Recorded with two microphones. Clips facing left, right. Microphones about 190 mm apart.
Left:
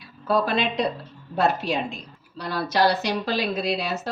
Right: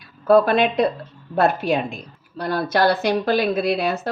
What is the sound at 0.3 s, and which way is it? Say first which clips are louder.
A woman's voice: right 8 dB; 55° right (ahead or behind).